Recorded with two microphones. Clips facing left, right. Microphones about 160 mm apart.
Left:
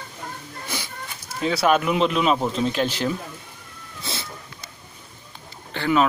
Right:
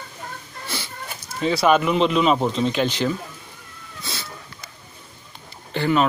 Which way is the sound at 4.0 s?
25° left (ahead or behind).